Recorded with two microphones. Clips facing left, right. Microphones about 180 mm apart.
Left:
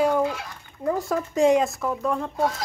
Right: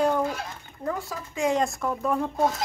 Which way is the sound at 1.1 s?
55° left (ahead or behind).